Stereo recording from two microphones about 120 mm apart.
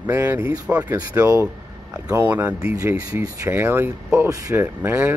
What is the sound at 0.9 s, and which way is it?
Speech, 25° right (ahead or behind).